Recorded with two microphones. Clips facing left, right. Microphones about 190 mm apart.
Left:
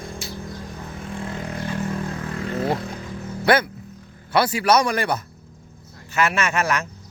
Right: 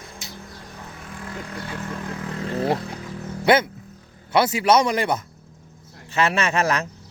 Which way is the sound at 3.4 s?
20° right (ahead or behind).